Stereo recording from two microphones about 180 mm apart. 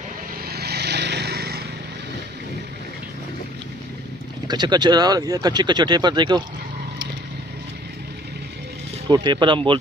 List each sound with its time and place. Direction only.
0.5 s vehicle: 60° right (ahead or behind)
4.5 s speech: 25° right (ahead or behind)
9.1 s speech: 25° right (ahead or behind)